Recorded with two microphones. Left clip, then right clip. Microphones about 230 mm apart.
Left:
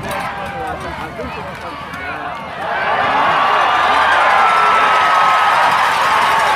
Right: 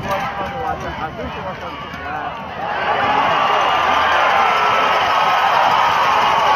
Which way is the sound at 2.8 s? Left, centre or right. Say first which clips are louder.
Left 2 dB; right.